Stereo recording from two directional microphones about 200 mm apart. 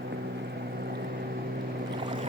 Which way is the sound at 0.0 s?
55° right (ahead or behind).